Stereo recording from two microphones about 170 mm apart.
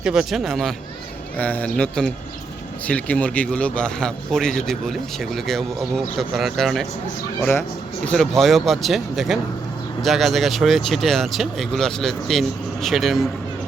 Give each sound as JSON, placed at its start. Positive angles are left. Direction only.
{"t": 0.0, "sound": "speech", "side_deg": -5}
{"t": 8.0, "sound": "speech", "side_deg": 5}